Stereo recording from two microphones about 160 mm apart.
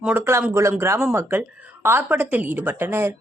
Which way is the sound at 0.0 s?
15° right (ahead or behind).